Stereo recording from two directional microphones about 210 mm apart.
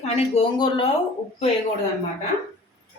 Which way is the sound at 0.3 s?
20° left (ahead or behind).